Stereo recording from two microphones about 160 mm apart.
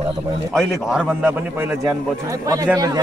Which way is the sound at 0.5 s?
Centre (ahead or behind).